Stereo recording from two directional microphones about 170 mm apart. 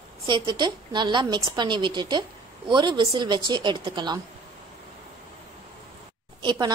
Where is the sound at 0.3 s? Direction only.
25° right (ahead or behind).